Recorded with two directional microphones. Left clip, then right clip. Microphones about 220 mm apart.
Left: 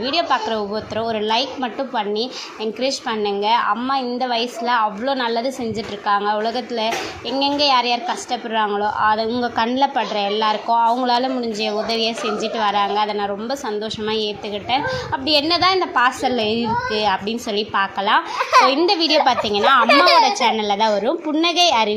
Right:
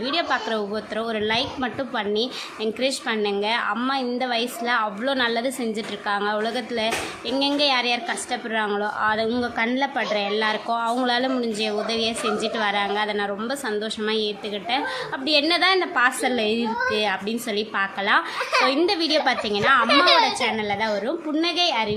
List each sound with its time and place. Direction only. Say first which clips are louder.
0.1 s a woman's voice: left 4 dB; centre (ahead or behind)
15.3 s a woman's voice: left 3 dB; 5° left (ahead or behind)
20.4 s a woman's voice: left 6 dB; 15° left (ahead or behind)